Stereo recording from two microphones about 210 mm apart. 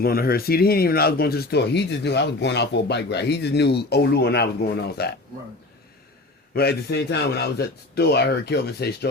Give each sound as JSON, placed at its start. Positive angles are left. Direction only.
{"t": 0.0, "sound": "speech", "side_deg": 45}
{"t": 6.5, "sound": "speech", "side_deg": 50}